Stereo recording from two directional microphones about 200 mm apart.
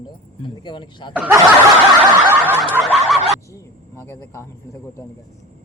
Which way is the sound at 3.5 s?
15° left (ahead or behind).